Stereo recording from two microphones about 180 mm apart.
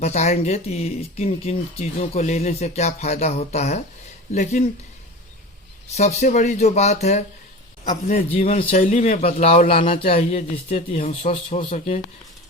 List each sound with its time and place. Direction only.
0.0 s speech: 40° left (ahead or behind)
5.9 s speech: 40° left (ahead or behind)